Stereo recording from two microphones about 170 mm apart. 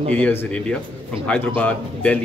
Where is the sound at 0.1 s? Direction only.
10° left (ahead or behind).